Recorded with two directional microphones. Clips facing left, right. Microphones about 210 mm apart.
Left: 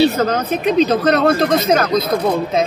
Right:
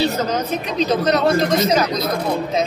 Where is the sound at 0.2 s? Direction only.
55° left (ahead or behind).